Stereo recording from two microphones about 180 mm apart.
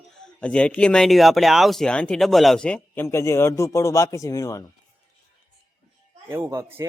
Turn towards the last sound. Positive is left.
turn(degrees=-15)  # may be behind; listen again after turning